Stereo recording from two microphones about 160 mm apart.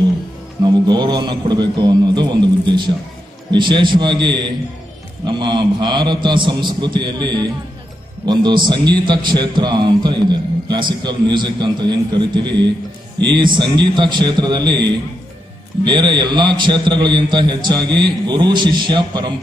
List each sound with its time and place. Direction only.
0.7 s a man's voice: 25° right (ahead or behind)